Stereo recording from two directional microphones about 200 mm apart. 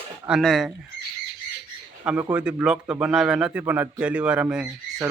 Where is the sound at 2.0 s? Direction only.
5° right (ahead or behind).